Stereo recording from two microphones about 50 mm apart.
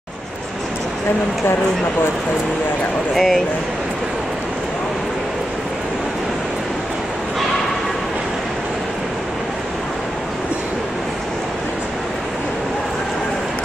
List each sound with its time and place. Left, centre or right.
3.2 s speech: centre